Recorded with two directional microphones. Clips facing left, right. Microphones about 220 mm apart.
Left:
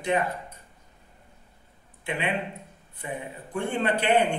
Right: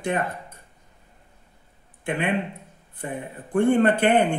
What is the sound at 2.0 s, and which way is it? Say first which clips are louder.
Speech: right 4 dB; 50° right (ahead or behind).